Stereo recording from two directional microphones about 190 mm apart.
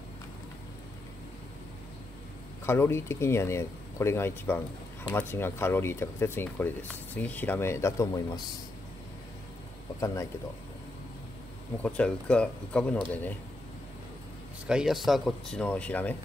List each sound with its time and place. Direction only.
2.6 s speech: 15° left (ahead or behind)
9.9 s speech: 15° left (ahead or behind)
11.8 s speech: 5° left (ahead or behind)
14.7 s speech: centre (ahead or behind)